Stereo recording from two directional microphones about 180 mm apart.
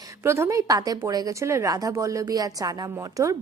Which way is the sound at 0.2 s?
15° right (ahead or behind).